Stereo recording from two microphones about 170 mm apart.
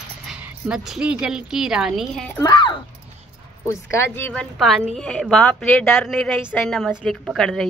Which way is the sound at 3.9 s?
15° left (ahead or behind).